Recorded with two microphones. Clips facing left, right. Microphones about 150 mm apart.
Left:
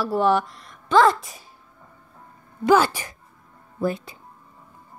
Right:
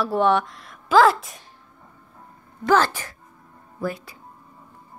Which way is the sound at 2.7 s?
10° left (ahead or behind).